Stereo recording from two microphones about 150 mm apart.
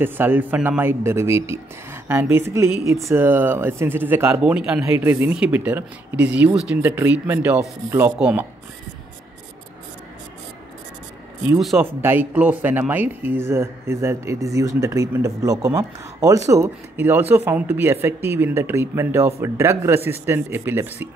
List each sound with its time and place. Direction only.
0.0 s speech: 15° right (ahead or behind)
11.4 s speech: 5° right (ahead or behind)
11.8 s speech: 15° right (ahead or behind)